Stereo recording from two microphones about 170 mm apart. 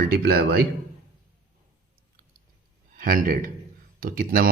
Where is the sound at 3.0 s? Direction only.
55° right (ahead or behind).